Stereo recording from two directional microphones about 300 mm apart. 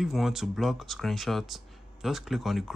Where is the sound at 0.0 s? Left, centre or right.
Centre.